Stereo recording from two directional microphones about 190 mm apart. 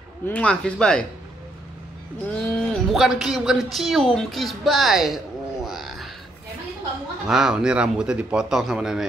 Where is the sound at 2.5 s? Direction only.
Centre (ahead or behind).